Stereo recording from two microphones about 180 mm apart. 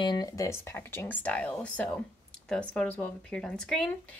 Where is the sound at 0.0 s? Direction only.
25° left (ahead or behind).